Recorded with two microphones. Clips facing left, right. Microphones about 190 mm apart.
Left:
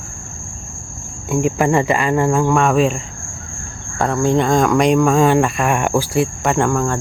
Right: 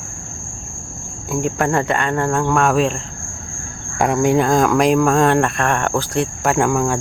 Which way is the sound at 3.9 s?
15° right (ahead or behind).